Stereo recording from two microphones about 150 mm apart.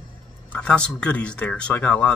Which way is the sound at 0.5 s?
5° left (ahead or behind).